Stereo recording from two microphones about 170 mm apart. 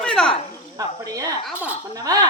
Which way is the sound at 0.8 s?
20° right (ahead or behind).